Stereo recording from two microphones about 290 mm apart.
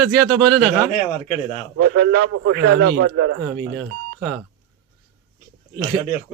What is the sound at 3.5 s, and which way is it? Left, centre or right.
Speech, centre.